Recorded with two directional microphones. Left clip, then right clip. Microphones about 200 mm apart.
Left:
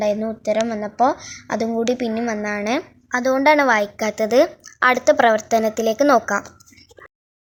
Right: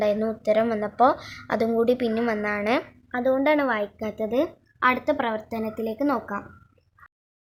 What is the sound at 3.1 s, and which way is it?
A woman's voice, 60° left (ahead or behind).